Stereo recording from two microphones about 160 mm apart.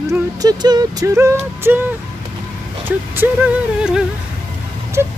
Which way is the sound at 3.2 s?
15° right (ahead or behind).